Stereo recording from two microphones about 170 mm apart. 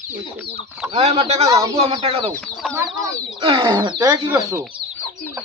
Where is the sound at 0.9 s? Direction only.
40° right (ahead or behind).